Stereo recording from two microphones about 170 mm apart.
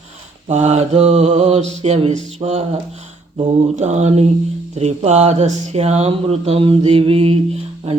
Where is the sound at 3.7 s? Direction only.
40° right (ahead or behind).